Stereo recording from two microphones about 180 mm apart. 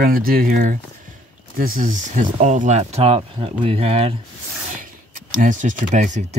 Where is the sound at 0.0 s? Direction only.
55° right (ahead or behind); by 4.2 s 35° right (ahead or behind).